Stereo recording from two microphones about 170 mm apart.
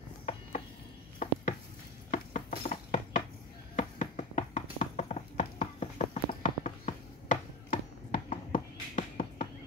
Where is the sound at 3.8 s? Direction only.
45° left (ahead or behind).